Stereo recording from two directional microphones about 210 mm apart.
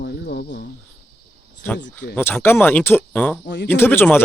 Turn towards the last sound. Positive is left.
turn(degrees=10)  # may be behind; listen again after turning